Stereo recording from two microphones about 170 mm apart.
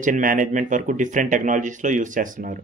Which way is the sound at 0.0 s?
50° right (ahead or behind).